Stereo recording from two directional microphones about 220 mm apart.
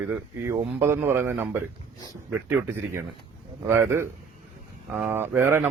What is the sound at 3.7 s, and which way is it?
Speech, 10° right (ahead or behind).